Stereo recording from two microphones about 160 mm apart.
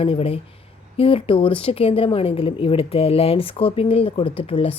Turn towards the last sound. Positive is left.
turn(degrees=35)  # may be behind; listen again after turning